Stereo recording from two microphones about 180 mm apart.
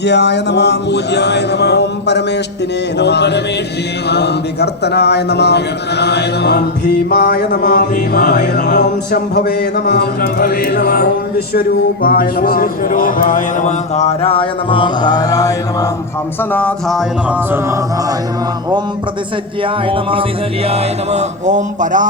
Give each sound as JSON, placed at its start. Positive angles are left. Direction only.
{"t": 0.0, "sound": "speech", "side_deg": 70}
{"t": 8.6, "sound": "music", "side_deg": 70}
{"t": 12.0, "sound": "speech", "side_deg": 55}
{"t": 16.4, "sound": "a sound", "side_deg": 10}
{"t": 19.6, "sound": "music", "side_deg": -30}